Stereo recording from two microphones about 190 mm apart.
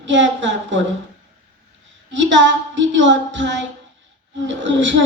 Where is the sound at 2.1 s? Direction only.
75° right (ahead or behind).